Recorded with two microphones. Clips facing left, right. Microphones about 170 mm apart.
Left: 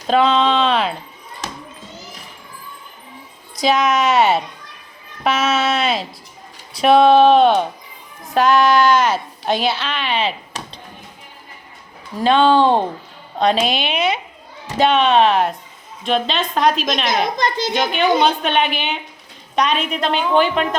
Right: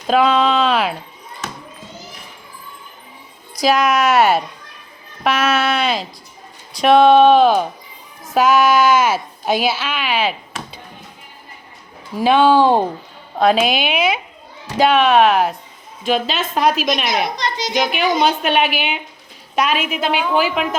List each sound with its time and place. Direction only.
0.1 s a woman's voice: centre (ahead or behind)
3.6 s a woman's voice: centre (ahead or behind)
12.1 s a woman's voice: 5° right (ahead or behind)
17.3 s a woman's voice: 50° left (ahead or behind)
17.7 s a woman's voice: 5° right (ahead or behind)